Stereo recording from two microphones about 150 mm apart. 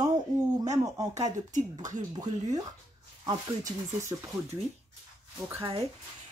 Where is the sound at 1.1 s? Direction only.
55° right (ahead or behind).